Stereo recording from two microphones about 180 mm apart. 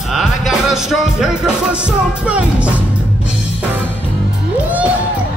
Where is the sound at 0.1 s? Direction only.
Centre (ahead or behind).